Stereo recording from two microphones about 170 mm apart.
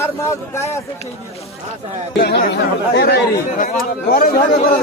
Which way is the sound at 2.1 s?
65° left (ahead or behind).